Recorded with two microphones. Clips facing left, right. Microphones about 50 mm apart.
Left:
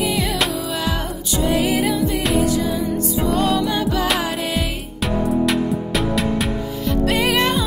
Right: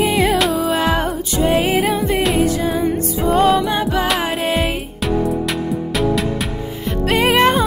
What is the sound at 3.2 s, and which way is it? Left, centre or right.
Music, right.